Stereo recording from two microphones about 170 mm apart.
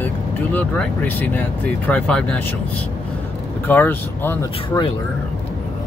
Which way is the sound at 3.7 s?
10° left (ahead or behind).